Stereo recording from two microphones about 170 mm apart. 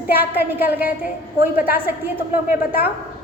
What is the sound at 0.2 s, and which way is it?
A woman's voice, 10° right (ahead or behind).